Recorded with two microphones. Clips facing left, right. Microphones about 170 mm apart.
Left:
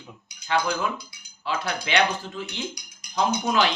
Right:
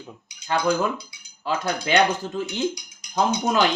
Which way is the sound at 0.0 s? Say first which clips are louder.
Right 4 dB; 35° right (ahead or behind).